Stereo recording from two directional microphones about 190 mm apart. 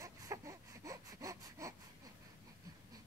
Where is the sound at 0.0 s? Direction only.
15° right (ahead or behind).